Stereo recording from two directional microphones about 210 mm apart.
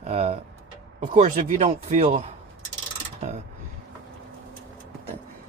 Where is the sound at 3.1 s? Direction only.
35° right (ahead or behind).